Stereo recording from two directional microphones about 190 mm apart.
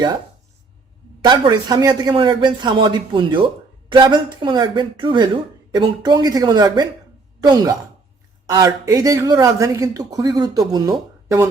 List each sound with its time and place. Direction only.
1.2 s a man's voice: 20° right (ahead or behind)